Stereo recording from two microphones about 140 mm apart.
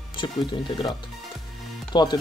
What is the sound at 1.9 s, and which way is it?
Speech, 30° left (ahead or behind).